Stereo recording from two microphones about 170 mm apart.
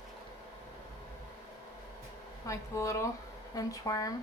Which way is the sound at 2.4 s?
15° left (ahead or behind).